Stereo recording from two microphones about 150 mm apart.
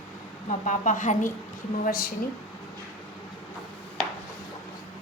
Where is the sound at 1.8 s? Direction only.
80° left.